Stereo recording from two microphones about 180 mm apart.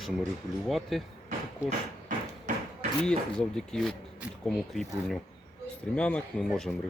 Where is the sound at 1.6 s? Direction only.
40° right (ahead or behind).